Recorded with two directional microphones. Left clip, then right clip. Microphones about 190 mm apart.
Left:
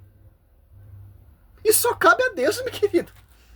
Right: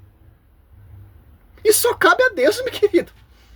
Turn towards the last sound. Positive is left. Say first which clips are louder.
# right 5 dB
turn(degrees=0)  # may be behind; listen again after turning